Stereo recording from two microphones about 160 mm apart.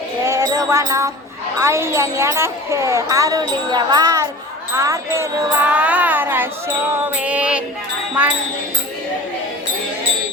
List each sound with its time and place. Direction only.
0.3 s music: 20° right (ahead or behind)
1.5 s speech: 15° right (ahead or behind)
4.7 s child singing: 20° right (ahead or behind)